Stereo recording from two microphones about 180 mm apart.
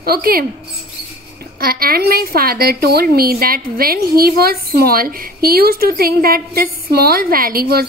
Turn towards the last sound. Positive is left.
turn(degrees=-55)  # may be behind; listen again after turning